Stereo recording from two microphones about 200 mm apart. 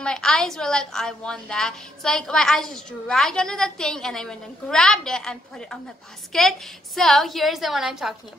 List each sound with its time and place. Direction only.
0.0 s a woman's voice: 5° left (ahead or behind)